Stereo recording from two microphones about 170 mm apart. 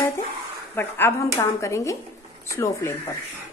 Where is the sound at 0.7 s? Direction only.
10° left (ahead or behind).